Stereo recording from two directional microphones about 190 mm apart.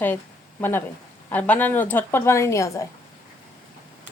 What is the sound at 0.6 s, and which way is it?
Speech, 10° left (ahead or behind).